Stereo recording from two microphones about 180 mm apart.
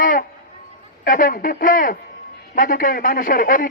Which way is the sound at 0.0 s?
50° left (ahead or behind).